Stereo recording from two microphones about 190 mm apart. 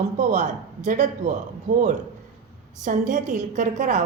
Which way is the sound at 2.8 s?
45° right (ahead or behind).